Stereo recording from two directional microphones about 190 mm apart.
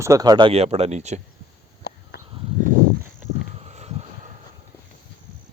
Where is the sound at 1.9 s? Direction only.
55° left (ahead or behind).